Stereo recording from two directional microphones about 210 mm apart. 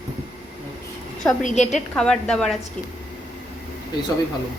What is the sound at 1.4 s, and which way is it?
Speech, 35° left (ahead or behind).